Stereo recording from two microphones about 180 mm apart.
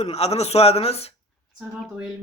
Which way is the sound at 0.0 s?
35° left (ahead or behind).